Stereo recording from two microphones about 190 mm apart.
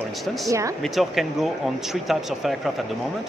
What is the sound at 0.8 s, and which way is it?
Speech, centre (ahead or behind).